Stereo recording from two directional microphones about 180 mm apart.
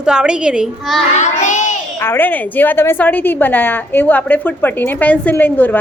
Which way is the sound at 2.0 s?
10° left (ahead or behind).